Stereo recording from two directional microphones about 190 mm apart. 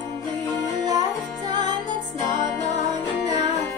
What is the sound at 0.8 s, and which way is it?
Music, 20° right (ahead or behind).